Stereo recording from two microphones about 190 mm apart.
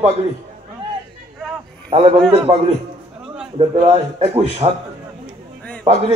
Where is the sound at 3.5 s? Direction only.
30° right (ahead or behind).